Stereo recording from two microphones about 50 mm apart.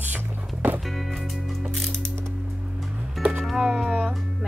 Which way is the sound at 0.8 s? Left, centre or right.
Centre.